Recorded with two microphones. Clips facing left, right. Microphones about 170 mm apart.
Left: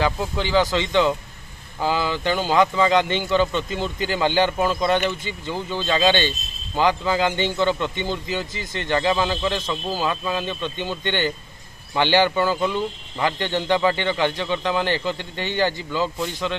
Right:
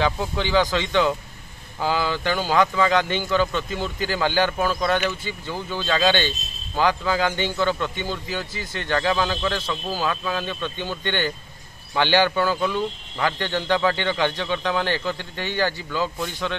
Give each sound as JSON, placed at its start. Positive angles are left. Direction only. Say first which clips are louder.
{"t": 0.0, "sound": "speech", "louder": "even", "side_deg": 10}
{"t": 3.2, "sound": "speech", "louder": "left 2 dB", "side_deg": 20}